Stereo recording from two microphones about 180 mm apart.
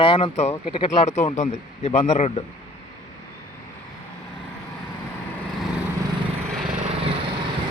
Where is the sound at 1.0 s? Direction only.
40° left (ahead or behind).